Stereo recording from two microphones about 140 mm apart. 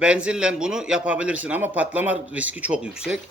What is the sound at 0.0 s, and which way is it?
Speech, 5° right (ahead or behind).